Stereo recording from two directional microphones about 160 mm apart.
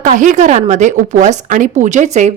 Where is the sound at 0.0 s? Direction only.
50° right (ahead or behind).